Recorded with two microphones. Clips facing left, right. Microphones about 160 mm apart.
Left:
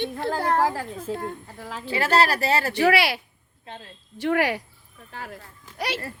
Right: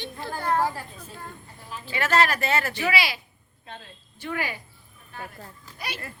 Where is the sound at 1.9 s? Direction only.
35° left (ahead or behind).